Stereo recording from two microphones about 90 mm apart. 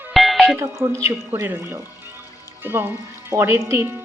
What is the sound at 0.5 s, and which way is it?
Speech, 25° right (ahead or behind).